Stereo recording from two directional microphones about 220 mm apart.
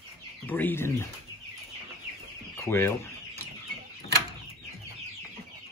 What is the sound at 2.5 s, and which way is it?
Speech, 10° left (ahead or behind).